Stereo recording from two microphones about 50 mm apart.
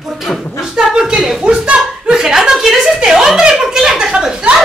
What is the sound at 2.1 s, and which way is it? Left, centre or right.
A woman's voice, centre.